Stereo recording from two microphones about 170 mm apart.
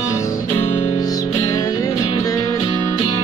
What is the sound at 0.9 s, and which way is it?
Music, 20° left (ahead or behind).